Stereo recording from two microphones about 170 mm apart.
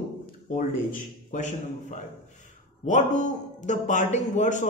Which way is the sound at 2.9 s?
45° left (ahead or behind).